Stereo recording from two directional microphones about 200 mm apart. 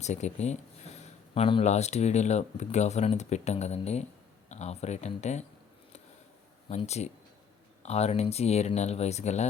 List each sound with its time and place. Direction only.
0.0 s speech: 35° left (ahead or behind)
6.7 s speech: 35° left (ahead or behind)